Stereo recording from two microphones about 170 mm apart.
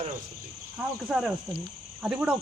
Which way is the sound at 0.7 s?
5° right (ahead or behind).